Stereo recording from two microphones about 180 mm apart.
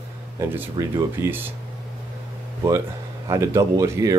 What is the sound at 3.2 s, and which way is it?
Speech, 15° right (ahead or behind).